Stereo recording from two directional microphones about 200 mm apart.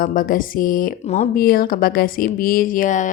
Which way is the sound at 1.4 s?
45° left (ahead or behind).